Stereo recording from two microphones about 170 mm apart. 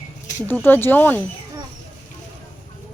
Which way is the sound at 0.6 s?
10° left (ahead or behind).